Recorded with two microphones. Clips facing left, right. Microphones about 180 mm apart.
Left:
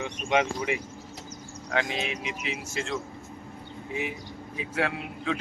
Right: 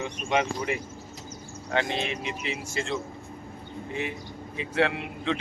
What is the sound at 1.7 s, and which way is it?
A man's voice, 5° left (ahead or behind).